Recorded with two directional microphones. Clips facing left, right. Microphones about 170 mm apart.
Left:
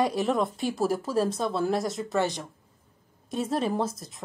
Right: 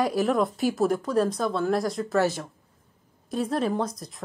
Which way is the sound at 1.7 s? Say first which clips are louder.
Right 3 dB; centre (ahead or behind).